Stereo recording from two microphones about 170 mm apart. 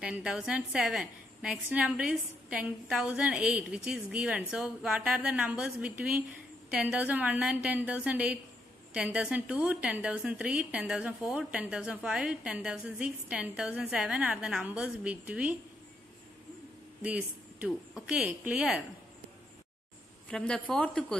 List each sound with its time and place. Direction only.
0.0 s a woman's voice: 5° right (ahead or behind)
17.0 s a woman's voice: 10° right (ahead or behind)
20.2 s a woman's voice: 5° left (ahead or behind)